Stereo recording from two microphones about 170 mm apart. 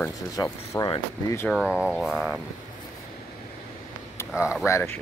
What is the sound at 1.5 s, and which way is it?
Speech, 5° right (ahead or behind).